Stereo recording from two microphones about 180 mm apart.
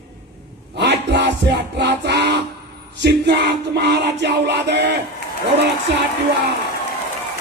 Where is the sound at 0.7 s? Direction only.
65° right (ahead or behind).